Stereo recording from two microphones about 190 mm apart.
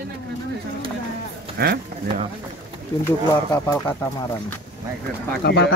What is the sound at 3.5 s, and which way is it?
Speech, 15° left (ahead or behind).